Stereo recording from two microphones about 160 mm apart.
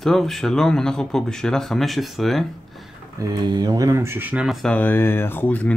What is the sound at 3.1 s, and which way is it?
Speech, 20° right (ahead or behind).